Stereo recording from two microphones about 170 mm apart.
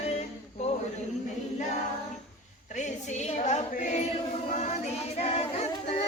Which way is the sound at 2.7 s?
45° left (ahead or behind).